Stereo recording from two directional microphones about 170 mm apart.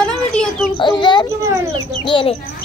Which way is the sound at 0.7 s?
25° left (ahead or behind).